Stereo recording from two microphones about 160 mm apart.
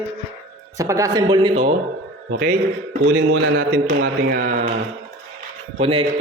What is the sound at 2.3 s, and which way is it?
Speech, 70° right (ahead or behind).